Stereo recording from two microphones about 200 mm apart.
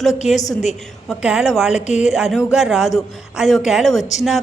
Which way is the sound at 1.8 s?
35° left (ahead or behind).